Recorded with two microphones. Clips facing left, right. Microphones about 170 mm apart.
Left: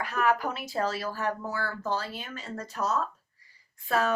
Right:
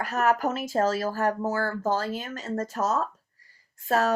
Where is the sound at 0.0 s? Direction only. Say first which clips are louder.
Right 3 dB; 45° right (ahead or behind).